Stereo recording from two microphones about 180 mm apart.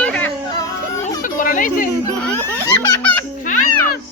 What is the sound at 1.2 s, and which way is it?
Chatter, 50° left (ahead or behind).